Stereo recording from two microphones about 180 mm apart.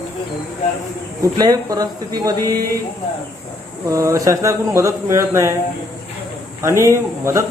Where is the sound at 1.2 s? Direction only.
20° right (ahead or behind).